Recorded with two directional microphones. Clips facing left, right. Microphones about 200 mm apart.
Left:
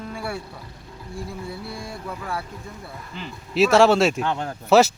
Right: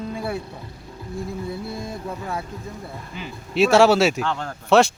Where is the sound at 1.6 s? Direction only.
20° right (ahead or behind).